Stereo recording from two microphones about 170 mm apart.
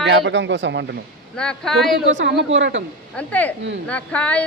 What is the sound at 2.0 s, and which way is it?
Speech, 90° right.